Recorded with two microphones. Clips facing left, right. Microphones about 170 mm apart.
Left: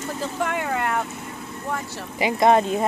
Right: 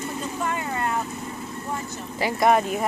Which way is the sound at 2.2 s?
25° left (ahead or behind).